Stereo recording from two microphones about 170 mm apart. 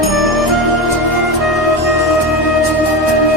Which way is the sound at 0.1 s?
Centre (ahead or behind).